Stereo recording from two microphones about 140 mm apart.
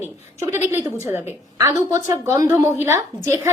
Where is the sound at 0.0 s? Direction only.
20° right (ahead or behind).